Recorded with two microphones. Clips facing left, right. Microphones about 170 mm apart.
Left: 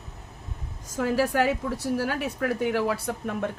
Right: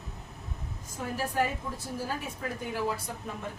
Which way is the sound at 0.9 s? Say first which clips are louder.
Left 7 dB; 90° left.